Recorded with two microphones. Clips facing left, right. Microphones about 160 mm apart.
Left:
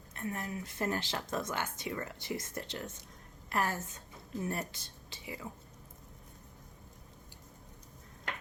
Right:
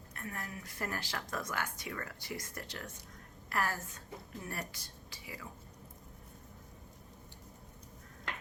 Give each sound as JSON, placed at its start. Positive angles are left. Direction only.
{"t": 0.1, "sound": "a woman's voice", "side_deg": 25}